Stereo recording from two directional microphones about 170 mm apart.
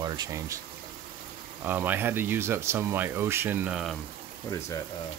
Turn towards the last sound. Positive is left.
turn(degrees=20)  # may be behind; listen again after turning